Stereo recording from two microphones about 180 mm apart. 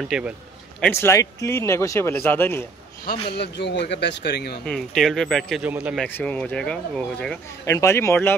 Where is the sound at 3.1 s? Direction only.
65° left (ahead or behind).